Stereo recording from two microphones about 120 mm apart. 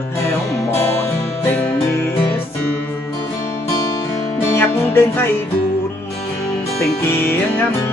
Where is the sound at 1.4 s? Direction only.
20° left (ahead or behind).